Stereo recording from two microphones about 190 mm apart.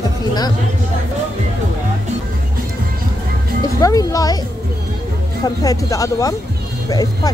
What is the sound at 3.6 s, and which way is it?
Speech, 20° left (ahead or behind).